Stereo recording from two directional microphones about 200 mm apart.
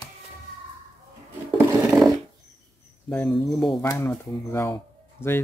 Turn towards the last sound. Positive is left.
turn(degrees=10)  # may be behind; listen again after turning